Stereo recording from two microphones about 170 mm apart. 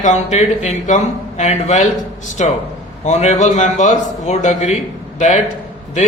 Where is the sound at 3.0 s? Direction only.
40° left (ahead or behind).